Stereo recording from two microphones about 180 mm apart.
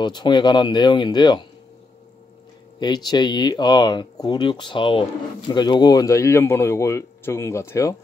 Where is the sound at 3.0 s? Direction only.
25° left (ahead or behind).